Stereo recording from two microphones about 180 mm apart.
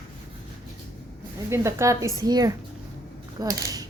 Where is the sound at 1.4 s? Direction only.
15° right (ahead or behind).